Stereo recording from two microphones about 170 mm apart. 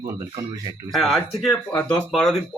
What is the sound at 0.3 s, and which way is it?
Speech, 20° right (ahead or behind).